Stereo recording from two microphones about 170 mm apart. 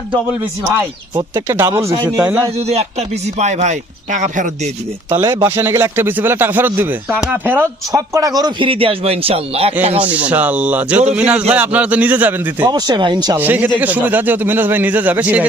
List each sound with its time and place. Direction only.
1.5 s speech: 15° right (ahead or behind)
2.6 s speech: 40° right (ahead or behind)
5.1 s speech: 20° right (ahead or behind); by 9.7 s 35° right (ahead or behind)
10.0 s speech: 10° right (ahead or behind)
12.6 s speech: 25° right (ahead or behind)
13.3 s speech: 10° right (ahead or behind)